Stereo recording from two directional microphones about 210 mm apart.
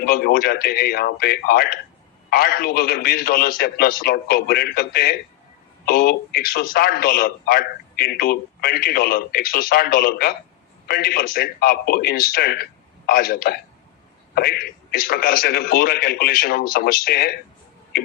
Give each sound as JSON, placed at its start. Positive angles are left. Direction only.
{"t": 0.0, "sound": "speech", "side_deg": 45}